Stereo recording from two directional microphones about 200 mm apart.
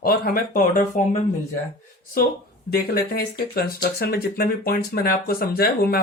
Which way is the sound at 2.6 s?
50° left (ahead or behind).